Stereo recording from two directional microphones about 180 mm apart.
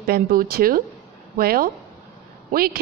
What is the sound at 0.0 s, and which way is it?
Speech, 55° right (ahead or behind).